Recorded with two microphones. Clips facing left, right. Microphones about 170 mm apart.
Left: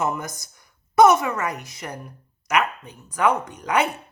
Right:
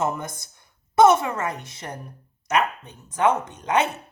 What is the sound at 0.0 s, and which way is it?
Speech, 25° right (ahead or behind).